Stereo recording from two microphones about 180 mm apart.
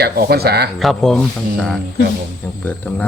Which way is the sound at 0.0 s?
60° right (ahead or behind).